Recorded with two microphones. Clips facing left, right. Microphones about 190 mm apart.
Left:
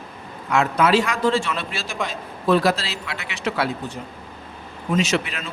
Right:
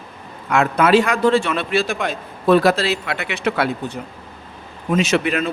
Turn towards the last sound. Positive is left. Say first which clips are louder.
# right 5 dB
turn(degrees=-55)  # may be behind; listen again after turning